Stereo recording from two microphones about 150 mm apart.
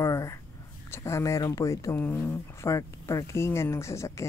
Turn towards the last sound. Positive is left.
turn(degrees=20)  # may be behind; listen again after turning